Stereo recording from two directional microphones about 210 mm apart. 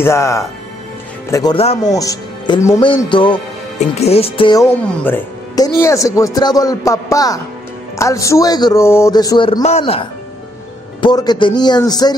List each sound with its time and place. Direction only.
0.0 s a man's voice: 15° left (ahead or behind)
4.6 s a man's voice: 10° left (ahead or behind)